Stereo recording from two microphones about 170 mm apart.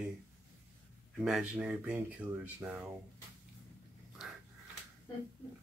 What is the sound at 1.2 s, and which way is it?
Speech, 5° right (ahead or behind).